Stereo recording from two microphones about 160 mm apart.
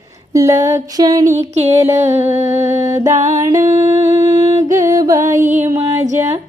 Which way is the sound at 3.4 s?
20° right (ahead or behind).